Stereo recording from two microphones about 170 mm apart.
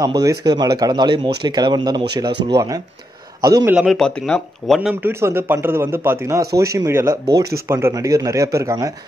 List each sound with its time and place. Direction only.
0.0 s a man's voice: 20° right (ahead or behind)
3.7 s a man's voice: centre (ahead or behind); by 8.9 s 20° right (ahead or behind)